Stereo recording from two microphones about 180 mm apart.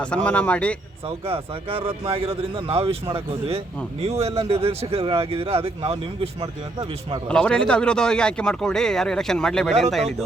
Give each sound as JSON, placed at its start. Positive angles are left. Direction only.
{"t": 0.0, "sound": "a man's voice", "side_deg": 5}
{"t": 1.3, "sound": "speech", "side_deg": -30}
{"t": 7.3, "sound": "speech", "side_deg": 5}